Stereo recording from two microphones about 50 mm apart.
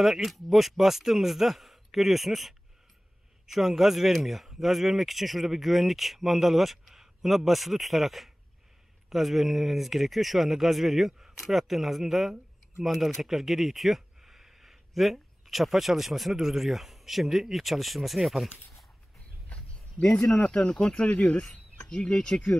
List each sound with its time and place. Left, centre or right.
0.0 s speech: centre
19.5 s a sound: left
20.3 s speech: left